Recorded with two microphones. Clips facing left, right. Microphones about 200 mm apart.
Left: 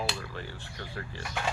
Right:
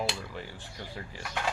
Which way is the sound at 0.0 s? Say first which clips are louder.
Right 1 dB; 15° right (ahead or behind).